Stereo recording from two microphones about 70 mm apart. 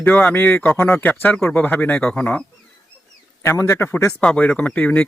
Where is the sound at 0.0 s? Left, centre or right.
Left.